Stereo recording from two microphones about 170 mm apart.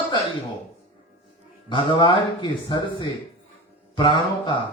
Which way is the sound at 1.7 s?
30° left (ahead or behind).